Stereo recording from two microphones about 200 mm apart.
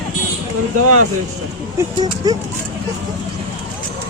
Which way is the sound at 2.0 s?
20° right (ahead or behind).